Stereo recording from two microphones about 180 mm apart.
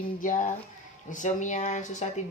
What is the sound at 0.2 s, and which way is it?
Speech, 45° left (ahead or behind).